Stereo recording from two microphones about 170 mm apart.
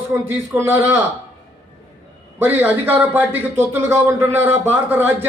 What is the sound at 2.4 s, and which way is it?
A man's voice, 10° right (ahead or behind).